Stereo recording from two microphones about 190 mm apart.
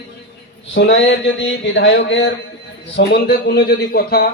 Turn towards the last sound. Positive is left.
turn(degrees=55)  # may be behind; listen again after turning